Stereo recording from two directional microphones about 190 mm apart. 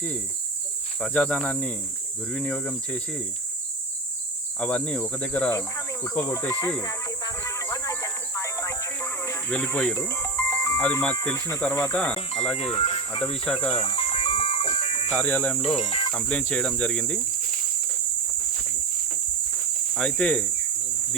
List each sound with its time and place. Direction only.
1.0 s speech: 5° left (ahead or behind)
4.6 s speech: 10° left (ahead or behind)
12.5 s speech: 30° left (ahead or behind)
13.4 s speech: 5° left (ahead or behind)
13.7 s music: 30° left (ahead or behind)
15.2 s speech: 10° left (ahead or behind)
15.6 s speech: 35° left (ahead or behind)
16.1 s speech: 10° left (ahead or behind)
20.0 s speech: 5° left (ahead or behind)